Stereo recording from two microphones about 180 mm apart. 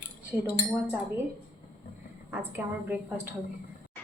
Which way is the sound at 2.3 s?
10° right (ahead or behind).